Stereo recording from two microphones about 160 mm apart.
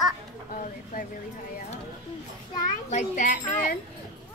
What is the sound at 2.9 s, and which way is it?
Speech, 50° left (ahead or behind).